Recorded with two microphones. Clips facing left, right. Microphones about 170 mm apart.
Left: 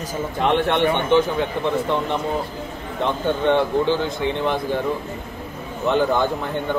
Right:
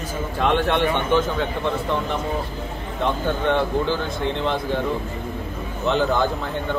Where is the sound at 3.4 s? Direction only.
15° left (ahead or behind).